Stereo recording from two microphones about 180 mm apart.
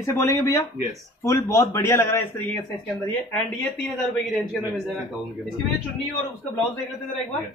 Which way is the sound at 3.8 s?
Centre (ahead or behind).